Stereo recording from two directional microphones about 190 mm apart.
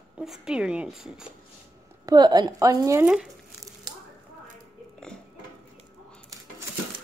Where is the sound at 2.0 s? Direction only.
20° right (ahead or behind); by 3.3 s 5° right (ahead or behind).